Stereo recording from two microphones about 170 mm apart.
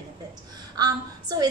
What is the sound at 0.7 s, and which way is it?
Speech, 25° right (ahead or behind).